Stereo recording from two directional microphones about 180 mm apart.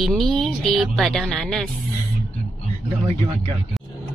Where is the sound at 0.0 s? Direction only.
Centre (ahead or behind).